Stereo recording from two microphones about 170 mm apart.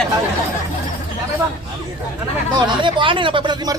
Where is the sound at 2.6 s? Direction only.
30° right (ahead or behind).